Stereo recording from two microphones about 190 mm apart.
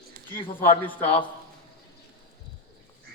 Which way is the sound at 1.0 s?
30° left (ahead or behind).